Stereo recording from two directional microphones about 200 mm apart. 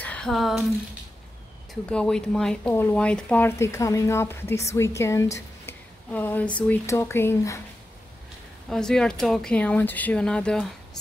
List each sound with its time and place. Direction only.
0.0 s a sound: 5° left (ahead or behind)
1.7 s speech: 5° left (ahead or behind)
8.6 s speech: 5° left (ahead or behind)